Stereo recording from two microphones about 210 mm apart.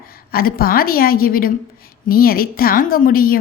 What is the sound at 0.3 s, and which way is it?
A woman's voice, 45° left (ahead or behind).